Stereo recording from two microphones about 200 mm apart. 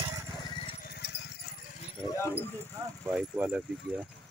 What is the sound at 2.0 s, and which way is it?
Dog, 25° left (ahead or behind).